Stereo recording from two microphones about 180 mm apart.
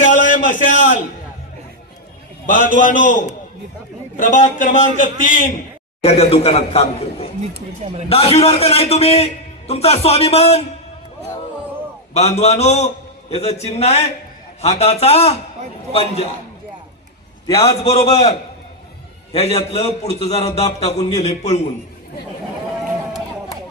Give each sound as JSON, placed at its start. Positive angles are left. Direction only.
{"t": 0.0, "sound": "a sound", "side_deg": 45}
{"t": 2.5, "sound": "a man's voice", "side_deg": 45}
{"t": 6.0, "sound": "a man's voice", "side_deg": 35}
{"t": 12.1, "sound": "a man's voice", "side_deg": 35}
{"t": 17.6, "sound": "a man's voice", "side_deg": 35}